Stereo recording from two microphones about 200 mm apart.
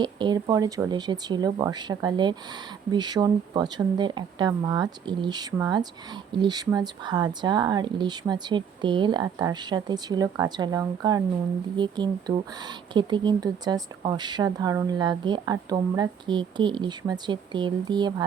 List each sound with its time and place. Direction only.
0.0 s speech: 20° right (ahead or behind)